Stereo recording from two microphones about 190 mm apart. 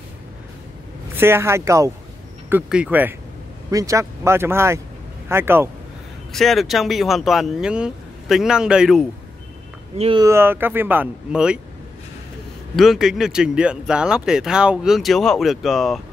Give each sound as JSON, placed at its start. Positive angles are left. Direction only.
{"t": 1.1, "sound": "speech", "side_deg": -10}
{"t": 6.3, "sound": "speech", "side_deg": 0}
{"t": 9.9, "sound": "speech", "side_deg": -30}
{"t": 10.2, "sound": "speech", "side_deg": -15}
{"t": 12.7, "sound": "speech", "side_deg": 0}